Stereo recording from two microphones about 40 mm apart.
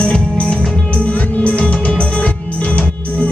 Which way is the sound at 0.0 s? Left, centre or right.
Left.